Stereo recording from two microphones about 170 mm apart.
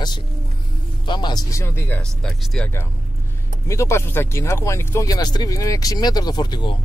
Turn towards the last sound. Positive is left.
turn(degrees=25)  # may be behind; listen again after turning